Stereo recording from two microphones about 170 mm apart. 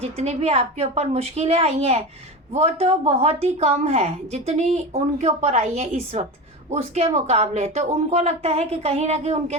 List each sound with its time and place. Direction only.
0.0 s a woman's voice: 40° right (ahead or behind)